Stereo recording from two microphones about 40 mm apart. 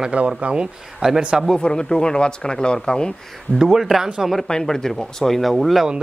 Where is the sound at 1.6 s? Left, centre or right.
Centre.